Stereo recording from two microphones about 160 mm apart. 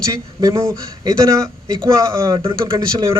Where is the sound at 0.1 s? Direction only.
20° right (ahead or behind).